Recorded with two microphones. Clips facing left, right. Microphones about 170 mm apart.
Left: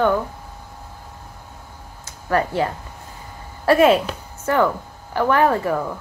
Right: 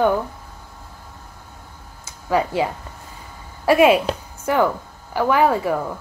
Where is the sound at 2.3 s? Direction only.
10° right (ahead or behind).